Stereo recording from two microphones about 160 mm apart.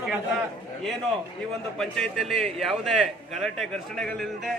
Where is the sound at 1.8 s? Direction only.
Centre (ahead or behind).